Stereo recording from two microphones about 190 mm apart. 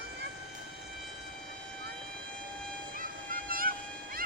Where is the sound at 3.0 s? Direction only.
50° right (ahead or behind).